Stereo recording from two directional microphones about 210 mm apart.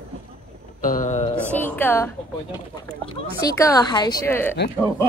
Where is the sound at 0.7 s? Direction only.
40° left (ahead or behind).